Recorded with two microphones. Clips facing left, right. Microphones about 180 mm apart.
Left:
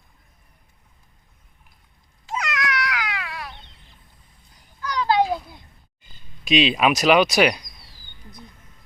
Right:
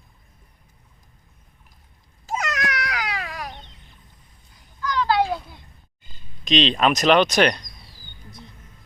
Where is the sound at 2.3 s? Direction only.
45° right (ahead or behind).